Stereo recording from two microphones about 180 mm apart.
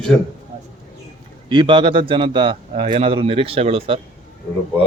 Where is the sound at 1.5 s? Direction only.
25° right (ahead or behind).